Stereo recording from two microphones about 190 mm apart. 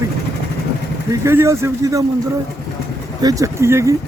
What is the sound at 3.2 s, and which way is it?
Speech, 20° right (ahead or behind).